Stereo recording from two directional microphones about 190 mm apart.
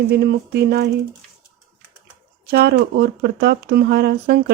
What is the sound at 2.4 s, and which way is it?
Speech, 55° right (ahead or behind).